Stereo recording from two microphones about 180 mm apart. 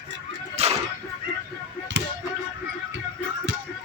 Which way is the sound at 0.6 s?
35° right (ahead or behind).